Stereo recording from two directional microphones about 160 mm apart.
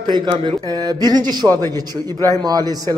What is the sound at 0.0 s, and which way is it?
Speech, 25° right (ahead or behind).